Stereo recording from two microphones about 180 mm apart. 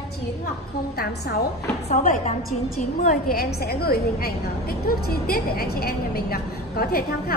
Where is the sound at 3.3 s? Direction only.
60° left (ahead or behind).